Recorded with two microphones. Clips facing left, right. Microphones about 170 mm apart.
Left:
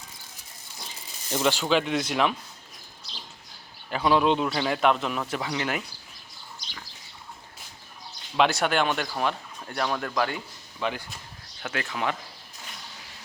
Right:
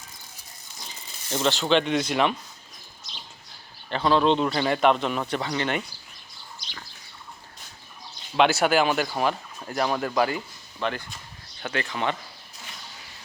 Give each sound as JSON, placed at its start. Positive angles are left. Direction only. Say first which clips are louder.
{"t": 1.3, "sound": "speech", "louder": "right 1 dB", "side_deg": 10}
{"t": 3.8, "sound": "speech", "louder": "right 1 dB", "side_deg": 10}
{"t": 8.4, "sound": "speech", "louder": "right 3 dB", "side_deg": -5}